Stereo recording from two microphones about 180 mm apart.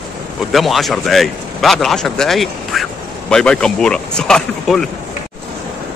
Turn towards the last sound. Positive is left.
turn(degrees=5)  # may be behind; listen again after turning